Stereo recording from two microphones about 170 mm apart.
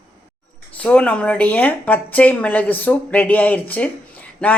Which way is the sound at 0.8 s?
5° left (ahead or behind).